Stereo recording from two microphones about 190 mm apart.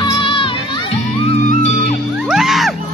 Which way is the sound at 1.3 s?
35° left (ahead or behind).